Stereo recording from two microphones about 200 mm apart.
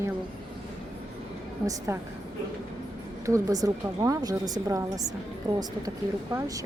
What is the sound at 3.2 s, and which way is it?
A woman's voice, 15° right (ahead or behind).